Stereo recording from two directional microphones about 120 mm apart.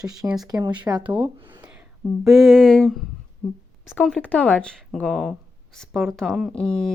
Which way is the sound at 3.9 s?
10° left (ahead or behind).